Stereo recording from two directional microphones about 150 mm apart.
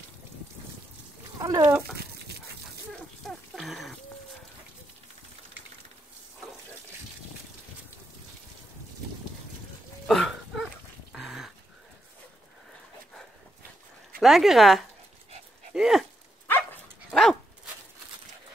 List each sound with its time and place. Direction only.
1.4 s speech: 25° right (ahead or behind)
2.9 s a sound: centre (ahead or behind)
10.0 s dog: centre (ahead or behind)
14.2 s speech: centre (ahead or behind)
15.7 s a sound: centre (ahead or behind)
17.1 s dog: 5° left (ahead or behind)